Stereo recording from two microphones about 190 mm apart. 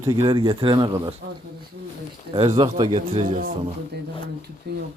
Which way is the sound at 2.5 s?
25° right (ahead or behind).